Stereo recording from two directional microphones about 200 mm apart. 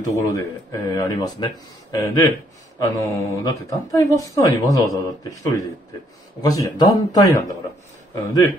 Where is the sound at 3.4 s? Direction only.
15° left (ahead or behind).